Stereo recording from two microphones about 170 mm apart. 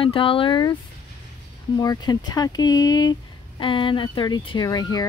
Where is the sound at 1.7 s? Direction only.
20° left (ahead or behind).